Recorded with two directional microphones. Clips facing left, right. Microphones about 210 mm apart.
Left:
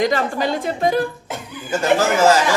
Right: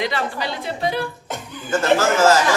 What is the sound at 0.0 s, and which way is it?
A woman's voice, 45° left (ahead or behind).